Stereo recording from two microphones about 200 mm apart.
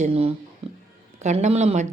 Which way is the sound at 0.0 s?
30° right (ahead or behind).